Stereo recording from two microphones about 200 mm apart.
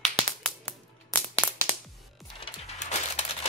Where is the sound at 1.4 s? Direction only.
5° right (ahead or behind).